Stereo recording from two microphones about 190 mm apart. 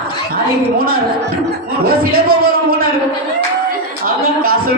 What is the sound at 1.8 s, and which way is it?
Speech, 50° right (ahead or behind).